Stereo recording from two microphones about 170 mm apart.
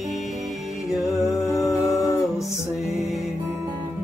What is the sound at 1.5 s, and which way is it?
Music, 15° left (ahead or behind).